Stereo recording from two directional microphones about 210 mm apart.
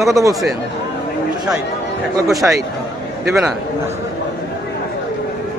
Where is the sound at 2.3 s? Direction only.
Centre (ahead or behind).